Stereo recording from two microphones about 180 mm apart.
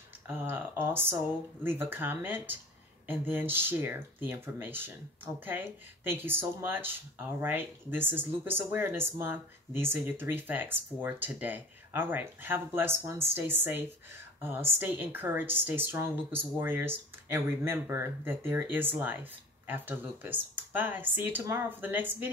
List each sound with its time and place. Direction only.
0.3 s speech: 10° right (ahead or behind)